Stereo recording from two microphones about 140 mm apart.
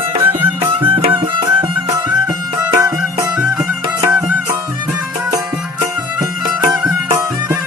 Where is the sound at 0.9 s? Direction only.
35° right (ahead or behind).